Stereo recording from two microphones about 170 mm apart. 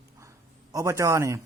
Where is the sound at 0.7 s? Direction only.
20° right (ahead or behind).